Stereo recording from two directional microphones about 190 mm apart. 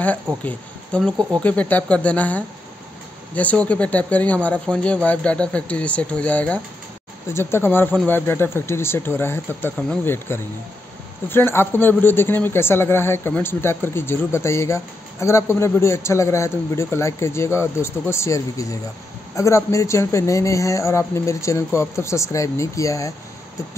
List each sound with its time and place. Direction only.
0.4 s a man's voice: 5° left (ahead or behind)